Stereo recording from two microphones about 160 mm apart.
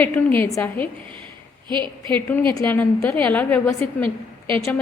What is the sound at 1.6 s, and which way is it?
Speech, 30° right (ahead or behind).